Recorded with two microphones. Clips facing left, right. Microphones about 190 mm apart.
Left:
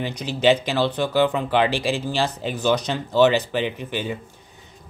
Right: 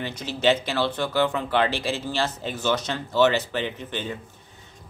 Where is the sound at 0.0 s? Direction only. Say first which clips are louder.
Left 3 dB; 15° left (ahead or behind).